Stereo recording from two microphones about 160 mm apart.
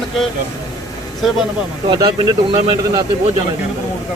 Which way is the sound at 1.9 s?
25° right (ahead or behind).